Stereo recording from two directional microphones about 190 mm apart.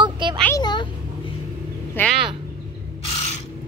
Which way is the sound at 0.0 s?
25° right (ahead or behind).